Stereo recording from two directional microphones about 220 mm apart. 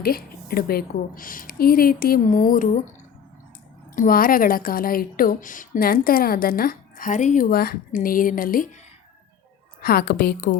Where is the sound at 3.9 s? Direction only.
40° left (ahead or behind).